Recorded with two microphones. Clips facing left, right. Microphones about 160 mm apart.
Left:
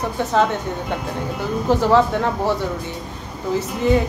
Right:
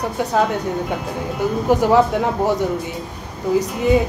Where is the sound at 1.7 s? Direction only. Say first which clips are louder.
Right 1 dB; 15° right (ahead or behind).